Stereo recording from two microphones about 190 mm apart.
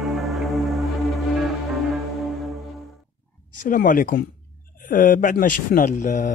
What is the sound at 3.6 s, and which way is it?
A man's voice, 45° left (ahead or behind).